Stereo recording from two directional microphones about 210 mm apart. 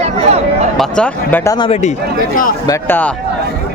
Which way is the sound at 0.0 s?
30° right (ahead or behind).